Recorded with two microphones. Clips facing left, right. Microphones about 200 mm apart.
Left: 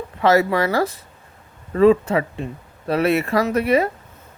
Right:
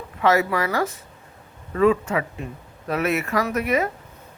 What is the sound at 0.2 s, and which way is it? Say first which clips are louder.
Speech: left 3 dB; 35° left (ahead or behind).